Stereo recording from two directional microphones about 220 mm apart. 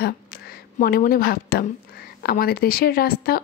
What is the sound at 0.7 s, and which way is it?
A woman's voice, 40° left (ahead or behind).